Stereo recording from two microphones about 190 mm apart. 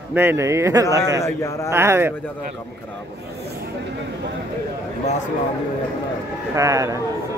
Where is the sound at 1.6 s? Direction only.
15° right (ahead or behind).